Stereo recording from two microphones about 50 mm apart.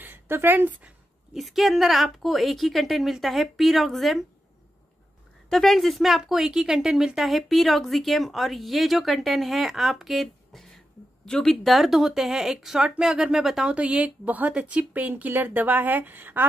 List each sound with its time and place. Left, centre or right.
0.0 s speech: right
1.3 s speech: centre
5.5 s speech: centre
11.6 s speech: centre
13.7 s speech: right